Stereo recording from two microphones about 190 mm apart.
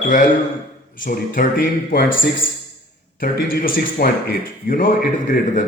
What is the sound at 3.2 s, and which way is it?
Speech, 50° left (ahead or behind).